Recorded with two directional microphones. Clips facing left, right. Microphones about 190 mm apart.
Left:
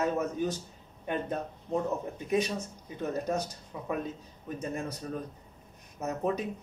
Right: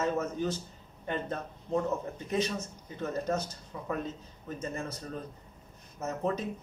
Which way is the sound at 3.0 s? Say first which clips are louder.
Left 1 dB; 15° left (ahead or behind).